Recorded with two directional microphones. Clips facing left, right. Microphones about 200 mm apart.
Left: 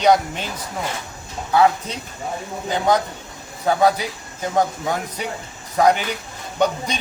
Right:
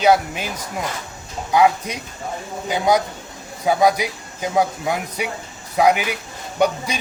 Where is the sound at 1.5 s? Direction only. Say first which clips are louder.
Right 1 dB; 10° right (ahead or behind).